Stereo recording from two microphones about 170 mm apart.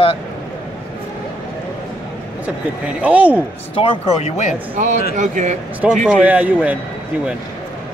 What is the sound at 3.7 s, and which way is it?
Speech, 35° left (ahead or behind).